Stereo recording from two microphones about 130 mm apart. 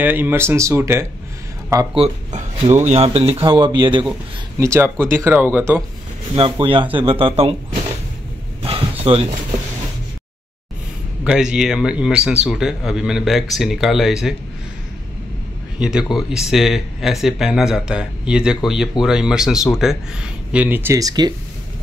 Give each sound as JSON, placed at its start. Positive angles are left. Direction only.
{"t": 0.0, "sound": "speech", "side_deg": -15}
{"t": 2.0, "sound": "speech", "side_deg": -50}
{"t": 4.6, "sound": "speech", "side_deg": -20}
{"t": 6.3, "sound": "speech", "side_deg": -40}
{"t": 8.6, "sound": "a sound", "side_deg": -50}
{"t": 11.2, "sound": "speech", "side_deg": -5}
{"t": 15.8, "sound": "speech", "side_deg": -5}
{"t": 21.0, "sound": "speech", "side_deg": -30}